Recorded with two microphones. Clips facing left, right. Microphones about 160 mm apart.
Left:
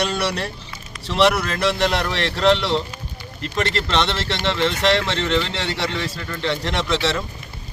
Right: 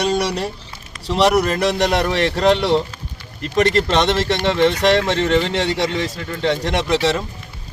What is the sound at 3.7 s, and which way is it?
Speech, 45° right (ahead or behind).